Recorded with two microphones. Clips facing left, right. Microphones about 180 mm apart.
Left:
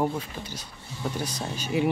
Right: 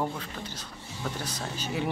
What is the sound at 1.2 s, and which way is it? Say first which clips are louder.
Speech: left 2 dB; 10° left (ahead or behind).